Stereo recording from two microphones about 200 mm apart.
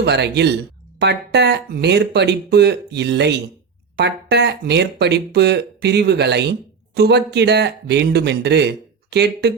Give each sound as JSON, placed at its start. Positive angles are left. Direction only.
{"t": 0.0, "sound": "speech", "side_deg": -55}